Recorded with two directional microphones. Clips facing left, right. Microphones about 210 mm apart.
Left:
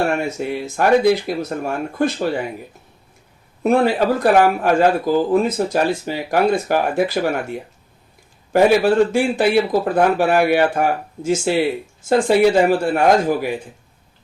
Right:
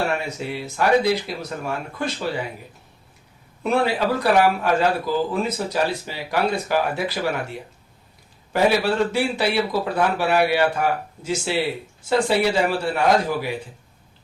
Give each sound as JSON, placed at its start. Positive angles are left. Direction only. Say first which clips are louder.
{"t": 0.2, "sound": "speech", "louder": "left 6 dB", "side_deg": 50}
{"t": 3.6, "sound": "speech", "louder": "left 5 dB", "side_deg": 45}
{"t": 8.5, "sound": "speech", "louder": "left 6 dB", "side_deg": 50}